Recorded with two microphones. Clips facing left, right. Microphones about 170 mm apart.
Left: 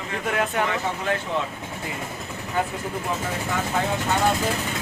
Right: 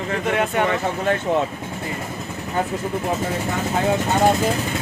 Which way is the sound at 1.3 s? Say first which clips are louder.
Right 10 dB; 45° right (ahead or behind).